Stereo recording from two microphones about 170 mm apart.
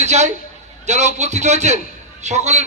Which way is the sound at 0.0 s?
40° right (ahead or behind).